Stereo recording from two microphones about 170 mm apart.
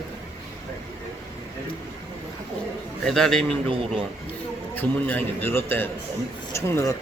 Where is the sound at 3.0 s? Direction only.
5° left (ahead or behind).